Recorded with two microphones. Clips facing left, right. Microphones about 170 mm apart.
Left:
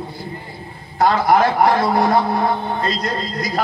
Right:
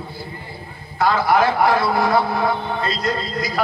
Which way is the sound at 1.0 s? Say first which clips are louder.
Left 2 dB; 40° left (ahead or behind).